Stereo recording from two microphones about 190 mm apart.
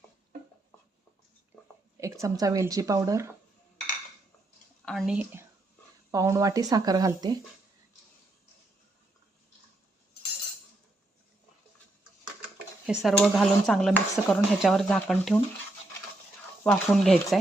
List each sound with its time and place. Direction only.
2.0 s speech: 15° right (ahead or behind)
4.9 s a woman's voice: centre (ahead or behind); by 7.3 s 20° right (ahead or behind)
12.8 s speech: centre (ahead or behind)
16.6 s speech: 5° left (ahead or behind)